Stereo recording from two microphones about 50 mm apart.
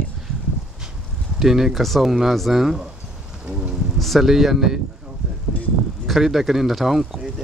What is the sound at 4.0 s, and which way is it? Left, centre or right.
Speech, centre.